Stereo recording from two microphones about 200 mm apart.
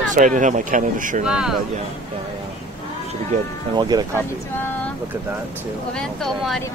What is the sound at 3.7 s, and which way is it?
Speech, 20° right (ahead or behind).